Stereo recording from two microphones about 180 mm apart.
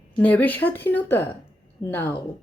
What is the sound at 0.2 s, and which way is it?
Speech, 10° left (ahead or behind).